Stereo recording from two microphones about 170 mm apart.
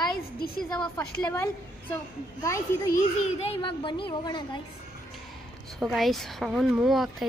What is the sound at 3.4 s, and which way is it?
A woman's voice, 30° left (ahead or behind).